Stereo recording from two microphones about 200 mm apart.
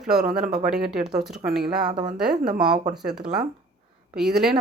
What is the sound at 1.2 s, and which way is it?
Speech, centre (ahead or behind).